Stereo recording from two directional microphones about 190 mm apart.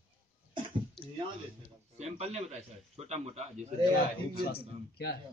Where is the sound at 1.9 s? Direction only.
35° right (ahead or behind).